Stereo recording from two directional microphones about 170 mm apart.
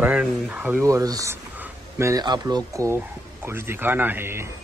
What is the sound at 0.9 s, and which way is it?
Speech, 20° right (ahead or behind).